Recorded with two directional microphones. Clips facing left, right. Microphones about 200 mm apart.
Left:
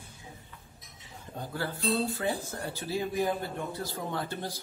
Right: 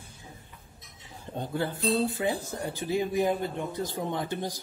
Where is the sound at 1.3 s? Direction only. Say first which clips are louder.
Right 4 dB; 25° right (ahead or behind).